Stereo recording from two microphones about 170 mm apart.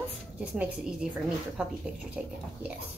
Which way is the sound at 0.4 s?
5° right (ahead or behind).